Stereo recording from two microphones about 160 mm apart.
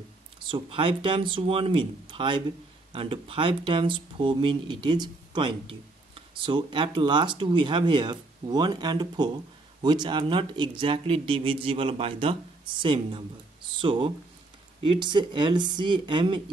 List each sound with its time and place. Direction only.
0.5 s speech: 35° right (ahead or behind)